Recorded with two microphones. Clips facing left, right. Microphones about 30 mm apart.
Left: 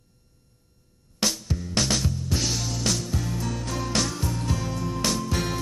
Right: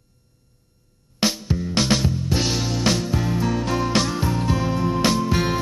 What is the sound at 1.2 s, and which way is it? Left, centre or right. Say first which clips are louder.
Music: right 5 dB; right.